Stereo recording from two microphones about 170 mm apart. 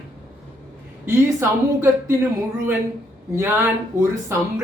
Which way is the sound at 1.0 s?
15° right (ahead or behind).